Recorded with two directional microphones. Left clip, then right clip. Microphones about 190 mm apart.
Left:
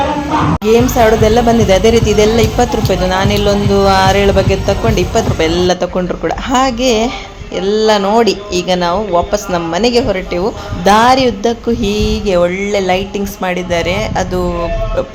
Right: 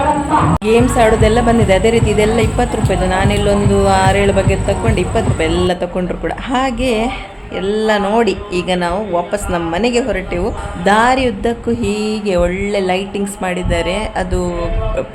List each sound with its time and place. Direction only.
0.6 s speech: 15° left (ahead or behind)